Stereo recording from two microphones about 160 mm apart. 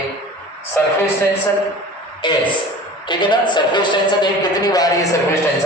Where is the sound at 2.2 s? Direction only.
30° left (ahead or behind).